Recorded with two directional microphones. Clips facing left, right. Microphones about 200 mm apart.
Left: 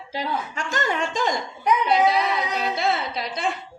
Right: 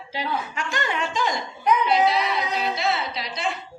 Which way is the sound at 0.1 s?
45° left (ahead or behind).